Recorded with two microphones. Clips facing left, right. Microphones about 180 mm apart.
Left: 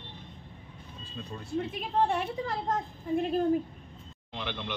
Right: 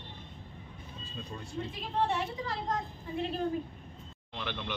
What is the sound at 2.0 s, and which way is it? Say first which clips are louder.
A woman's voice: left 3 dB; 50° left (ahead or behind).